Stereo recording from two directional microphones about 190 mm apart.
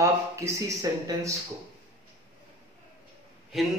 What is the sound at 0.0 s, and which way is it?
Speech, 15° right (ahead or behind).